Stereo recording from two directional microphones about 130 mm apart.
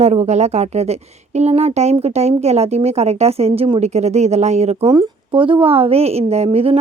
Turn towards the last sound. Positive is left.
turn(degrees=-50)  # may be behind; listen again after turning